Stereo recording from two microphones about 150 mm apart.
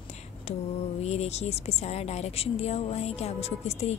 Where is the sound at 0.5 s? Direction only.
45° left (ahead or behind).